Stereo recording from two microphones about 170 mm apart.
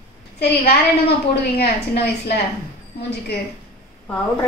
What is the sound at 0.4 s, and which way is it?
A woman's voice, 70° left (ahead or behind).